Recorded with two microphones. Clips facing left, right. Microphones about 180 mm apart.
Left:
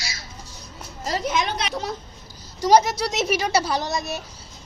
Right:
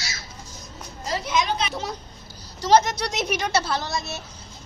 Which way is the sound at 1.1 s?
50° left (ahead or behind).